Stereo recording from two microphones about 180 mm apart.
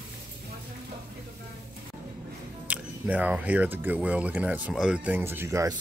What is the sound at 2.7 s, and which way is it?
Speech, 10° right (ahead or behind).